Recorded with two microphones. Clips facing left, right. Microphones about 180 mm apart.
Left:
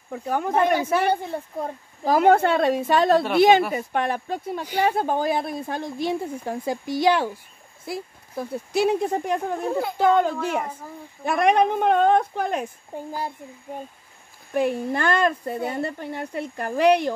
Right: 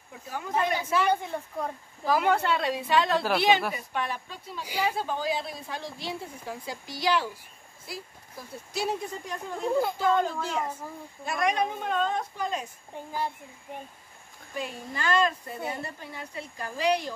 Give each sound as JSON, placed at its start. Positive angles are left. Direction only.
{"t": 0.1, "sound": "speech", "side_deg": 60}
{"t": 2.0, "sound": "a woman's voice", "side_deg": 45}
{"t": 12.9, "sound": "a child's voice", "side_deg": 40}
{"t": 14.5, "sound": "speech", "side_deg": 60}